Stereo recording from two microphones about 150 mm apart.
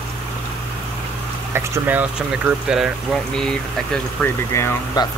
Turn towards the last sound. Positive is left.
turn(degrees=20)  # may be behind; listen again after turning